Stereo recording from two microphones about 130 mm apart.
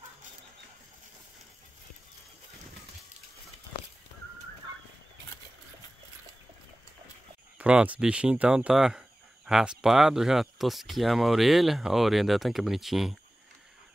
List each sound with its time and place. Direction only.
7.5 s speech: 10° right (ahead or behind)